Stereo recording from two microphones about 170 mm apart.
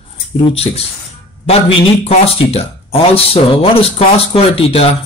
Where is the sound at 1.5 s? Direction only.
35° left (ahead or behind).